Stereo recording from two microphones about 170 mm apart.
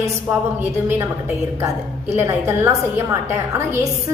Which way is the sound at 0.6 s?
15° right (ahead or behind).